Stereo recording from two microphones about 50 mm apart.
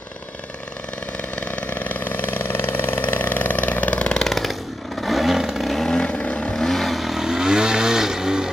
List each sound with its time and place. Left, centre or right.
1.3 s vehicle: left
4.2 s chainsaw: centre
5.0 s vehicle: centre
5.9 s vehicle: centre
6.5 s vehicle: centre